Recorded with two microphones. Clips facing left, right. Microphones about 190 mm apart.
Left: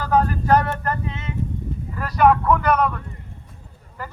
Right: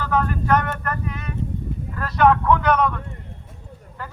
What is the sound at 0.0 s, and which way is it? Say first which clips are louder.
Speech: left 3 dB; 35° left (ahead or behind).